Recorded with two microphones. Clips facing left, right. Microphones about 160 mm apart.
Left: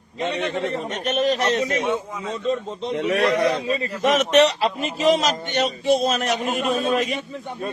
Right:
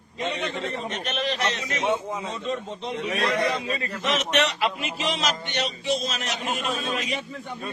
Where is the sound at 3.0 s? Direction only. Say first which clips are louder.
Left 8 dB; 70° left (ahead or behind).